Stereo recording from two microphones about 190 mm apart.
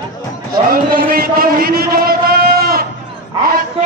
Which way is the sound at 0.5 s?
50° right (ahead or behind).